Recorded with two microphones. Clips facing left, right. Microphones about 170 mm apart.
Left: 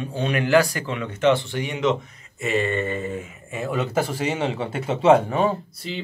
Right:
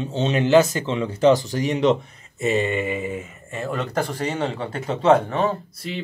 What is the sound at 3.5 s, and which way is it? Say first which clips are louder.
Speech: left 1 dB; centre (ahead or behind).